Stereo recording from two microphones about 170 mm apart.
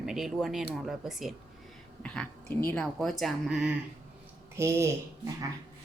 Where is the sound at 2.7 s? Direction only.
5° left (ahead or behind).